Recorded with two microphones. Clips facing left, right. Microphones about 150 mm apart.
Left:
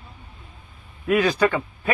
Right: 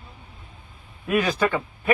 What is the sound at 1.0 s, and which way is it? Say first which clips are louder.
Speech: left 3 dB; 20° right (ahead or behind).